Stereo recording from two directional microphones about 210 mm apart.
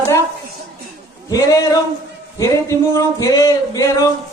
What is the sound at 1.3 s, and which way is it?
Speech, 15° left (ahead or behind).